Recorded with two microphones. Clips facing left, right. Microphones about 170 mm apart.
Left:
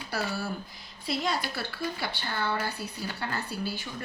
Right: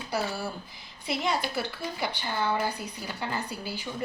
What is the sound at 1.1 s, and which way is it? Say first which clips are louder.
A woman's voice: right 1 dB; 20° right (ahead or behind).